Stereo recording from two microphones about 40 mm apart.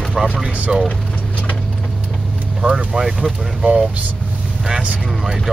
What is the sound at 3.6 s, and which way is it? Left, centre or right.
Speech, right.